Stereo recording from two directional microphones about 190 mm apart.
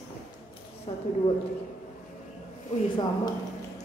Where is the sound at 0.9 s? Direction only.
30° left (ahead or behind).